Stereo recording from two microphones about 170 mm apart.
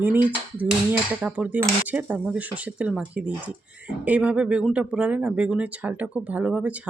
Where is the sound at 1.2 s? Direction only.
10° right (ahead or behind).